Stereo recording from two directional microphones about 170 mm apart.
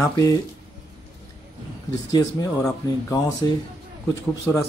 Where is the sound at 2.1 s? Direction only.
20° left (ahead or behind).